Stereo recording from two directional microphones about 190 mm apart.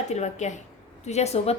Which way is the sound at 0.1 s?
35° left (ahead or behind).